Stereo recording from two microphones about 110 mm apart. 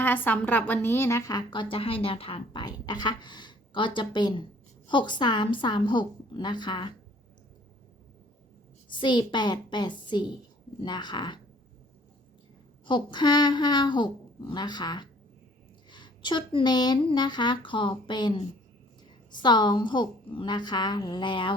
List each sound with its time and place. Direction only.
0.0 s a woman's voice: 15° left (ahead or behind); by 6.9 s 40° left (ahead or behind)
8.9 s a woman's voice: 45° left (ahead or behind)
12.8 s a woman's voice: 45° left (ahead or behind)
19.4 s a woman's voice: 45° left (ahead or behind)